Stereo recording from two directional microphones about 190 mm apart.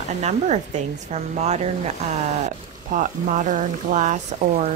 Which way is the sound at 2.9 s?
45° right (ahead or behind).